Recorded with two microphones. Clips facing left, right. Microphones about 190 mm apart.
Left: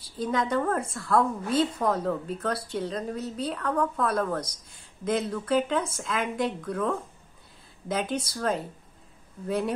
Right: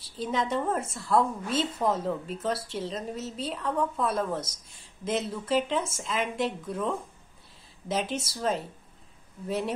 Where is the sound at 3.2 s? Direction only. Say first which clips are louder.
Left 3 dB; 25° right (ahead or behind).